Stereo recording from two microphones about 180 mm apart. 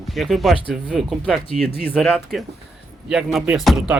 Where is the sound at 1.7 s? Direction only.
30° left (ahead or behind).